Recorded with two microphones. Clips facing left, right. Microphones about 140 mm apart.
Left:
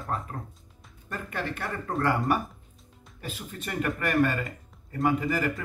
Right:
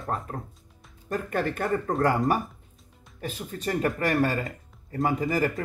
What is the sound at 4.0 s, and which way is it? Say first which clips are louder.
Speech: left 2 dB; 35° right (ahead or behind).